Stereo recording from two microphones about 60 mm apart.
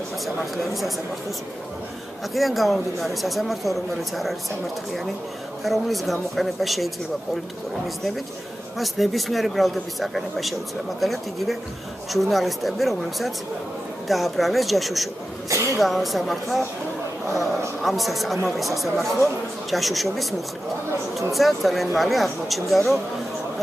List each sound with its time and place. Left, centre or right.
2.3 s speech: centre
5.6 s speech: centre
8.7 s speech: centre
15.5 s a sound: right
15.8 s speech: centre